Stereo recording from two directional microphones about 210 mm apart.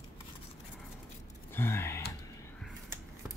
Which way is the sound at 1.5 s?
10° left (ahead or behind).